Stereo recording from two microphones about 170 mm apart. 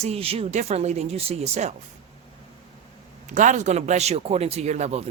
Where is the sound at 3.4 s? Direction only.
45° right (ahead or behind).